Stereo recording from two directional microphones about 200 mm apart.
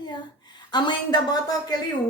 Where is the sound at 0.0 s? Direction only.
20° left (ahead or behind).